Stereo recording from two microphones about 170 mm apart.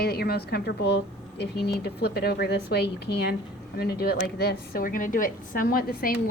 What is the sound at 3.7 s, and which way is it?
A woman's voice, 65° left (ahead or behind).